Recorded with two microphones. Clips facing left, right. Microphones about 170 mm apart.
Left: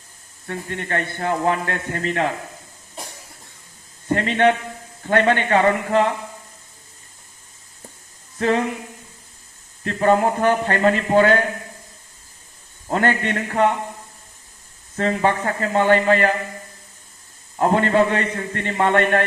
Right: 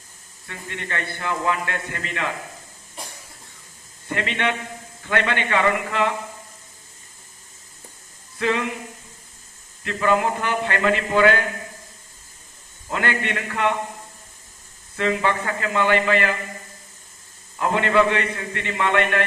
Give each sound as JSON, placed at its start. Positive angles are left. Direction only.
{"t": 0.4, "sound": "a man's voice", "side_deg": 45}
{"t": 4.1, "sound": "a man's voice", "side_deg": 40}
{"t": 8.4, "sound": "speech", "side_deg": 40}
{"t": 9.8, "sound": "a man's voice", "side_deg": 40}
{"t": 12.9, "sound": "a man's voice", "side_deg": 40}
{"t": 14.9, "sound": "a man's voice", "side_deg": 40}
{"t": 17.6, "sound": "a man's voice", "side_deg": 40}